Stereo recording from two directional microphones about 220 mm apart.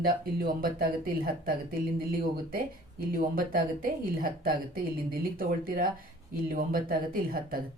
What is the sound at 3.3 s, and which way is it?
A woman's voice, 40° right (ahead or behind).